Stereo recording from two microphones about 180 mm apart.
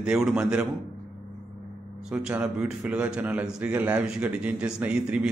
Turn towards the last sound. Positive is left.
turn(degrees=-5)  # may be behind; listen again after turning